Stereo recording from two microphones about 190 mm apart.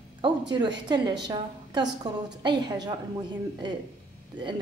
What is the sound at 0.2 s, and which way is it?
A woman's voice, 25° right (ahead or behind).